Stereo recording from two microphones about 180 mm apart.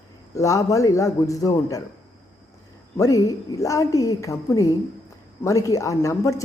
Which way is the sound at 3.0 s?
20° left (ahead or behind).